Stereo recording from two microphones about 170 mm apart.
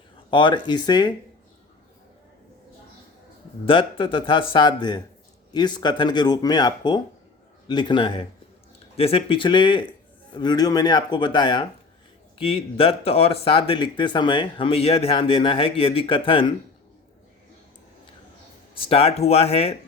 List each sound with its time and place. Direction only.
0.3 s speech: 25° left (ahead or behind)
3.7 s speech: 30° left (ahead or behind)
18.7 s speech: 35° left (ahead or behind)